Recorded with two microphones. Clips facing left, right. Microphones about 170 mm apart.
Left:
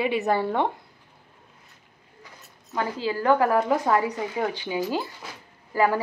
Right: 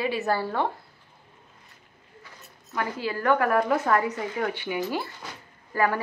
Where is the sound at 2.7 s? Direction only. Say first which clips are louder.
Left 2 dB; 20° left (ahead or behind).